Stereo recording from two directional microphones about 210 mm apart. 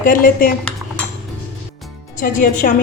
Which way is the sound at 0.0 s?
40° left (ahead or behind).